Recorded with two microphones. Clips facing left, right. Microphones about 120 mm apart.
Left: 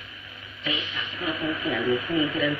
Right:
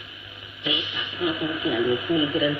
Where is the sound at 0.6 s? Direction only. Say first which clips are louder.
Right 2 dB; 15° right (ahead or behind).